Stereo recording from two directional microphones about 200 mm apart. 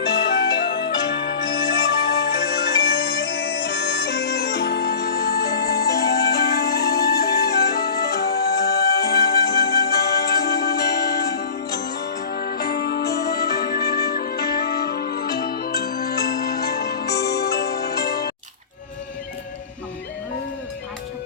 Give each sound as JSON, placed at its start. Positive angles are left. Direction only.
{"t": 0.2, "sound": "music", "side_deg": 55}